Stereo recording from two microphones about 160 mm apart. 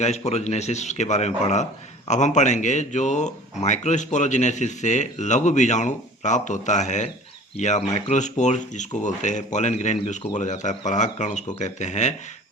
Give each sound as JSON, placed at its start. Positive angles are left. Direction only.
{"t": 0.0, "sound": "speech", "side_deg": 45}